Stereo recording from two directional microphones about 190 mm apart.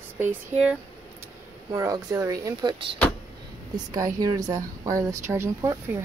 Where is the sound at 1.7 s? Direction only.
20° right (ahead or behind).